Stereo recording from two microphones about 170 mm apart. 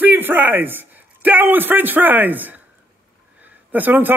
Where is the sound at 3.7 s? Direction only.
10° right (ahead or behind).